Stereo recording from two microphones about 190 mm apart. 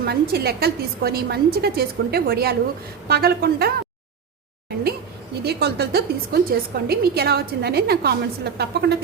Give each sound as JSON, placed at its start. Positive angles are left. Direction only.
{"t": 0.0, "sound": "a woman's voice", "side_deg": -55}
{"t": 5.4, "sound": "a woman's voice", "side_deg": -60}